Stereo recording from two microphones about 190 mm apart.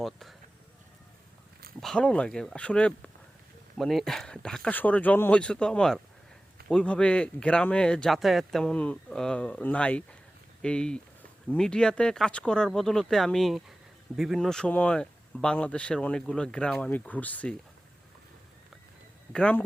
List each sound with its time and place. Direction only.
0.0 s speech: centre (ahead or behind)
1.8 s speech: 5° left (ahead or behind)
19.3 s speech: 5° left (ahead or behind)